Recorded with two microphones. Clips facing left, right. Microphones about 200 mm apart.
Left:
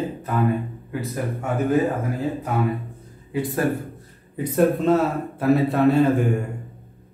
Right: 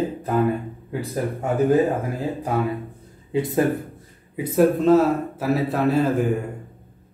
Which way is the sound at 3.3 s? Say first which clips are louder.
Right 3 dB; 20° right (ahead or behind).